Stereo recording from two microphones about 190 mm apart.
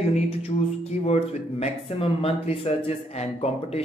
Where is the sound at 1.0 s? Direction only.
35° left (ahead or behind).